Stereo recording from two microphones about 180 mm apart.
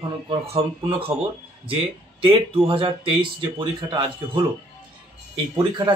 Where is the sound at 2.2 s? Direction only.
30° right (ahead or behind).